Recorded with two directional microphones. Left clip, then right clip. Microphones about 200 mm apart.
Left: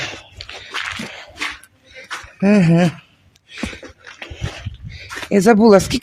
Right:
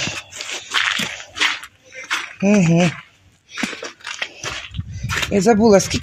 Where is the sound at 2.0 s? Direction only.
10° left (ahead or behind).